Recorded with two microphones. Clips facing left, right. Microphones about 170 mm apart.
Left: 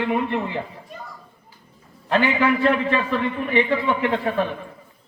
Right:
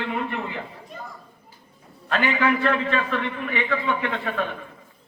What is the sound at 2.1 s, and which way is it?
A man's voice, 30° left (ahead or behind).